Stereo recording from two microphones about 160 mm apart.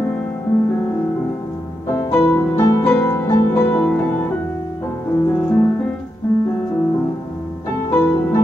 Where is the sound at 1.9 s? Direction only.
15° left (ahead or behind).